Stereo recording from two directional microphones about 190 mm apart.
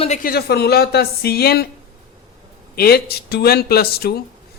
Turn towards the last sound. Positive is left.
turn(degrees=55)  # may be behind; listen again after turning